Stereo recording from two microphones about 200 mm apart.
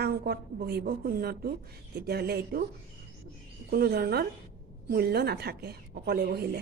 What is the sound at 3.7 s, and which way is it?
A woman's voice, 50° right (ahead or behind).